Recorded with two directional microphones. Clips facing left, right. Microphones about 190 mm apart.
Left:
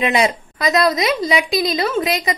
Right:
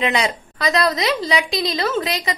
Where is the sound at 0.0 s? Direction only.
20° left (ahead or behind).